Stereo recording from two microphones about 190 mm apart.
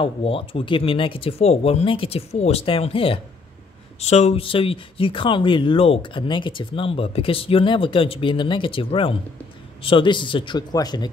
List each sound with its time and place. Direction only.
0.0 s speech: 30° left (ahead or behind)